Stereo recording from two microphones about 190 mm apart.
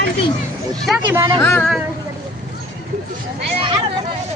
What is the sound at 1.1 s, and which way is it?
Speech, 20° right (ahead or behind).